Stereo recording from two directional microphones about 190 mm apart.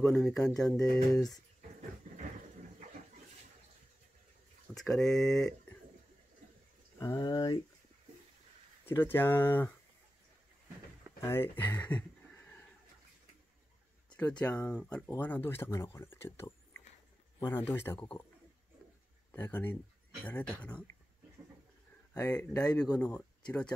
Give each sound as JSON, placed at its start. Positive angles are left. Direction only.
{"t": 0.0, "sound": "speech", "side_deg": 5}
{"t": 4.7, "sound": "speech", "side_deg": 0}
{"t": 7.0, "sound": "speech", "side_deg": 20}
{"t": 8.8, "sound": "speech", "side_deg": 10}
{"t": 11.1, "sound": "speech", "side_deg": 10}
{"t": 14.4, "sound": "speech", "side_deg": 5}
{"t": 19.3, "sound": "speech", "side_deg": 10}
{"t": 22.2, "sound": "speech", "side_deg": 10}